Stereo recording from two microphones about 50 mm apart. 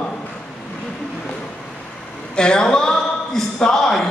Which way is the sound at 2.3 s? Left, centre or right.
Centre.